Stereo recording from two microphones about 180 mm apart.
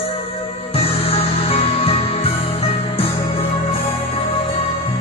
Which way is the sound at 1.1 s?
30° left (ahead or behind).